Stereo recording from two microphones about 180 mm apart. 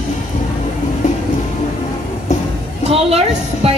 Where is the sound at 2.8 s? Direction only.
35° right (ahead or behind).